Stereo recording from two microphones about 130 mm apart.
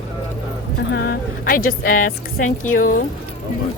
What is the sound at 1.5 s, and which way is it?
A woman's voice, 90° left.